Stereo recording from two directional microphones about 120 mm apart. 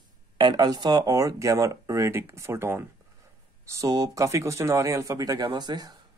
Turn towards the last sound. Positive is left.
turn(degrees=-35)  # may be behind; listen again after turning